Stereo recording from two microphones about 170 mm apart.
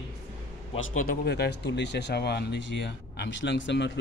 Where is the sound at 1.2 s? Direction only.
75° left (ahead or behind).